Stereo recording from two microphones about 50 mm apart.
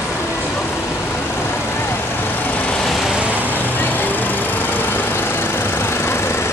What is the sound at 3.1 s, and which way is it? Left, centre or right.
Vehicle, right.